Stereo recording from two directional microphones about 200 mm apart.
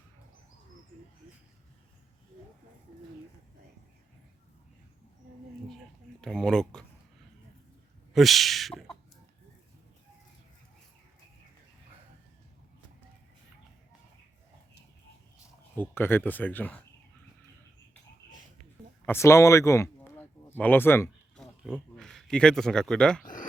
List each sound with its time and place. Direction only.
6.2 s speech: 5° left (ahead or behind)
8.1 s speech: centre (ahead or behind)
15.7 s speech: 10° left (ahead or behind)
19.0 s a sound: 15° left (ahead or behind)
21.9 s speech: 5° left (ahead or behind)
23.2 s speech: 40° left (ahead or behind)